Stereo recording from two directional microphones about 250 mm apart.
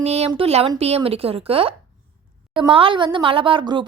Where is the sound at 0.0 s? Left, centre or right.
Right.